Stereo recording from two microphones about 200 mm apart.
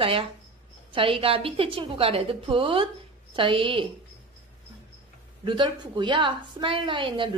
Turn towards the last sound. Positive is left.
turn(degrees=-25)  # may be behind; listen again after turning